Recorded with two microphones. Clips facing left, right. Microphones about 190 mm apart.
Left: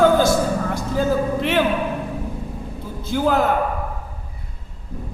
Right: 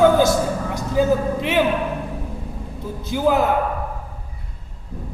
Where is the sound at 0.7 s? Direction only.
15° right (ahead or behind).